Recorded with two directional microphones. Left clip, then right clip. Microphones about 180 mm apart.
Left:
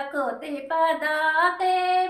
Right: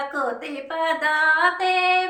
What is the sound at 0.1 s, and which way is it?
Female singing, 20° left (ahead or behind).